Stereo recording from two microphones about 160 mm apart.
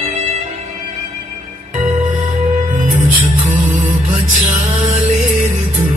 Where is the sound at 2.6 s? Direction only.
50° right (ahead or behind).